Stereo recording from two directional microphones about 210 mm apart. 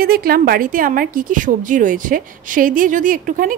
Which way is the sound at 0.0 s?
45° right (ahead or behind).